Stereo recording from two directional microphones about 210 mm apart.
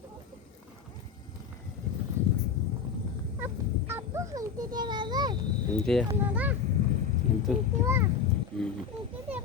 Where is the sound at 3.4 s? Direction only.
10° right (ahead or behind).